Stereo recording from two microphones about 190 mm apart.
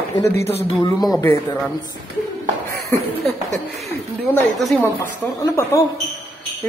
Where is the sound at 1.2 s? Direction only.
10° left (ahead or behind).